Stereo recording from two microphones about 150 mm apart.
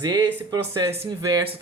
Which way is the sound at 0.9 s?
45° right (ahead or behind).